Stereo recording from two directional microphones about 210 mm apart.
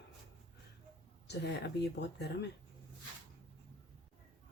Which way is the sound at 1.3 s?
50° left (ahead or behind).